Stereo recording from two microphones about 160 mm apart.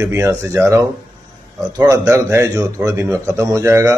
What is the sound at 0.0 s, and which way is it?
A man's voice, 15° right (ahead or behind).